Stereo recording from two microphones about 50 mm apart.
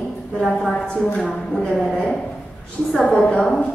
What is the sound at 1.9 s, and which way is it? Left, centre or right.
A woman's voice, left.